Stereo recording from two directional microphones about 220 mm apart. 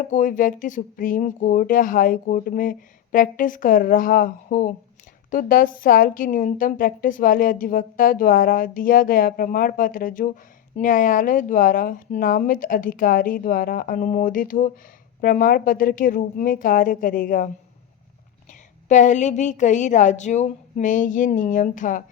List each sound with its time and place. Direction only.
0.1 s a woman's voice: 35° left (ahead or behind)
18.9 s a woman's voice: 35° left (ahead or behind)